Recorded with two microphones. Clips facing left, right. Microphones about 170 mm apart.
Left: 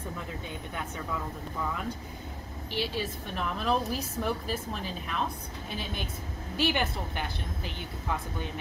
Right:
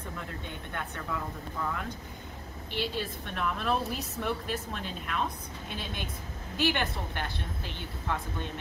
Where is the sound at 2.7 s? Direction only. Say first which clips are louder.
Left 1 dB; centre (ahead or behind).